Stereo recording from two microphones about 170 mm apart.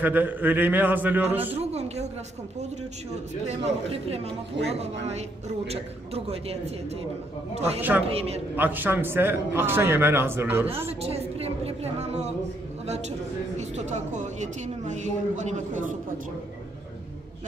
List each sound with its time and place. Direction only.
0.0 s a man's voice: 10° right (ahead or behind)
1.6 s a woman's voice: 40° right (ahead or behind)
3.4 s a woman's voice: 35° right (ahead or behind)
8.5 s a man's voice: 10° right (ahead or behind)
10.9 s a woman's voice: 35° right (ahead or behind)
13.6 s a woman's voice: 40° right (ahead or behind)